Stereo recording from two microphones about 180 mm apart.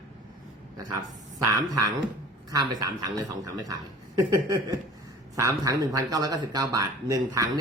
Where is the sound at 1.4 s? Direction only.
20° right (ahead or behind).